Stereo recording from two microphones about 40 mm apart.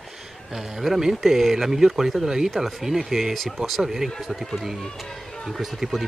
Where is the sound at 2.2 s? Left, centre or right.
Centre.